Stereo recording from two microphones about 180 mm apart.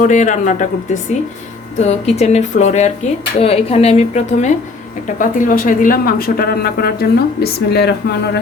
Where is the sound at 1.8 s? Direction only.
35° left (ahead or behind).